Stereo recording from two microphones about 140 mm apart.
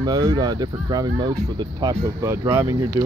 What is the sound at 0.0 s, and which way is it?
Speech, 30° right (ahead or behind).